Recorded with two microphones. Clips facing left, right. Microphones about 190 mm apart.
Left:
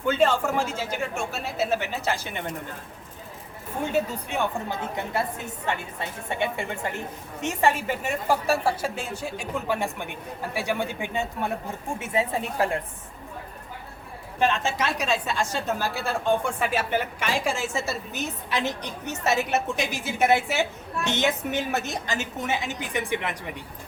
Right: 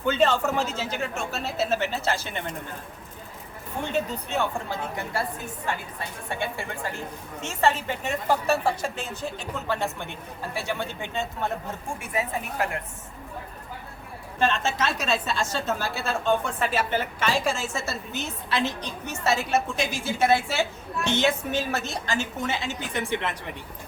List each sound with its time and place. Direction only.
0.0 s a woman's voice: 10° left (ahead or behind)
3.8 s a woman's voice: 10° left (ahead or behind)
4.9 s a woman's voice: 20° left (ahead or behind)
7.4 s a woman's voice: 10° left (ahead or behind)
11.9 s a woman's voice: 25° left (ahead or behind)
14.3 s a woman's voice: 15° left (ahead or behind)